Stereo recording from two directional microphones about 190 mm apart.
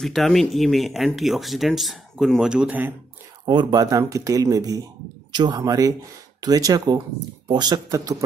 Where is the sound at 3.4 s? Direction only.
20° right (ahead or behind).